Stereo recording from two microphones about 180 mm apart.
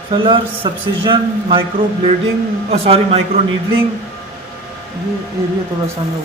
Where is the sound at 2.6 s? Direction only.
35° right (ahead or behind).